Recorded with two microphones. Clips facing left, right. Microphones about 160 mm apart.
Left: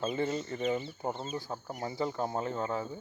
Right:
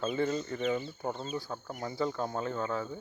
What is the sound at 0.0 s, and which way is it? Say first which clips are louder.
Speech: right 1 dB; 20° left (ahead or behind).